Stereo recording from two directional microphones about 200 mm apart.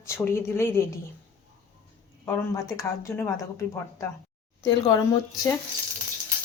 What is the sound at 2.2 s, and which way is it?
Speech, 15° left (ahead or behind).